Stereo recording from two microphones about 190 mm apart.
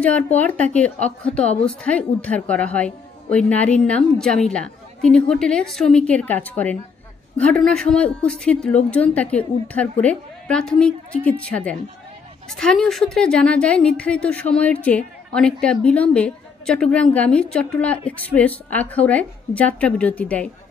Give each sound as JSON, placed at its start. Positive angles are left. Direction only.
{"t": 0.4, "sound": "a woman's voice", "side_deg": 10}
{"t": 0.9, "sound": "speech", "side_deg": 35}
{"t": 1.8, "sound": "a woman's voice", "side_deg": 5}